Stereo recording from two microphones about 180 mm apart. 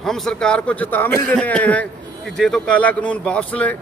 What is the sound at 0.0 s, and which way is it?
A man's voice, centre (ahead or behind).